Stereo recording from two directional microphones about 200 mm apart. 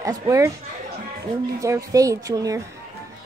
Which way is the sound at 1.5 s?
15° right (ahead or behind).